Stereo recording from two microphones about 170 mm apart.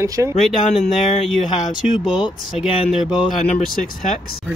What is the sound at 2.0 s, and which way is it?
A man's voice, 5° right (ahead or behind).